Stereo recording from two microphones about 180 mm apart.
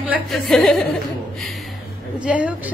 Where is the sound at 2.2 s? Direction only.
5° right (ahead or behind).